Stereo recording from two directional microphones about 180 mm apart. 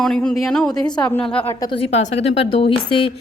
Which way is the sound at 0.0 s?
5° left (ahead or behind).